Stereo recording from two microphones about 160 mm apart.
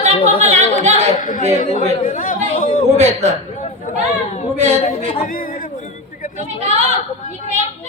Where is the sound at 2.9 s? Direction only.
45° right (ahead or behind).